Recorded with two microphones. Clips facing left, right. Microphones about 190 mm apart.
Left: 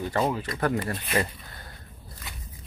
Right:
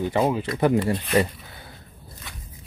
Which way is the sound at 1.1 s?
5° right (ahead or behind).